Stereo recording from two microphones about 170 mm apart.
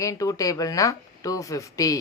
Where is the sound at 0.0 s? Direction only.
20° left (ahead or behind).